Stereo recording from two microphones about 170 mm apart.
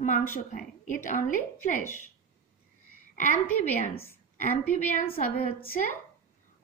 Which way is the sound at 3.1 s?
50° left (ahead or behind).